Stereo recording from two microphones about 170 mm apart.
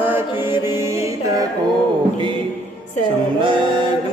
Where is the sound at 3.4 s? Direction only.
30° right (ahead or behind).